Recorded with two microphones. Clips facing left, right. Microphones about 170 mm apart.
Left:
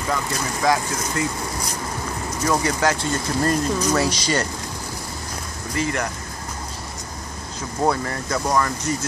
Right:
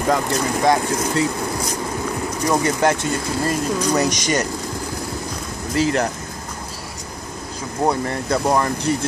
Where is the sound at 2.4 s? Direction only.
20° right (ahead or behind).